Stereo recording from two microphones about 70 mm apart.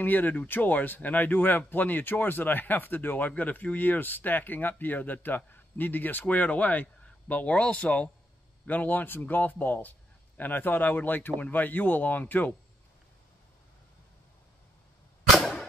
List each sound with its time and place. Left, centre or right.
0.0 s speech: left